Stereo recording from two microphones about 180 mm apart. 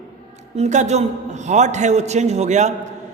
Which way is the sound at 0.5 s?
40° right (ahead or behind).